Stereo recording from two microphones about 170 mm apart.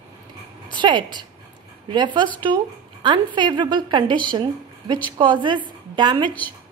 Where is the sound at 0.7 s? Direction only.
25° right (ahead or behind).